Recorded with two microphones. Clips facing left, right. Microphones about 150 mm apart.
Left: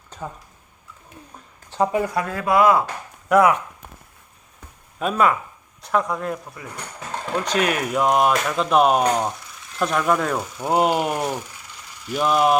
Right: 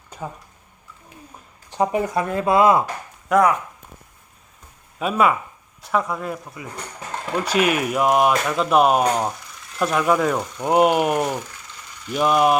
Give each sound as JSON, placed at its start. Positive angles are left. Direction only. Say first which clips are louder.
{"t": 0.1, "sound": "a sound", "louder": "right 1 dB", "side_deg": -10}
{"t": 1.7, "sound": "speech", "louder": "even", "side_deg": -15}
{"t": 3.2, "sound": "speech", "louder": "left 1 dB", "side_deg": 0}
{"t": 4.9, "sound": "speech", "louder": "right 1 dB", "side_deg": -5}